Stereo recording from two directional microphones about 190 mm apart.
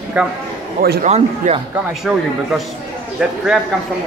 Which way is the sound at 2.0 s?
Centre (ahead or behind).